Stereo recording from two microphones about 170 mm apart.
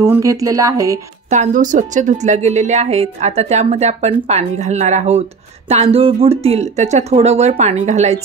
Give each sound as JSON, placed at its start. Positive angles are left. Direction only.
{"t": 0.0, "sound": "speech", "side_deg": -15}
{"t": 1.3, "sound": "a woman's voice", "side_deg": -45}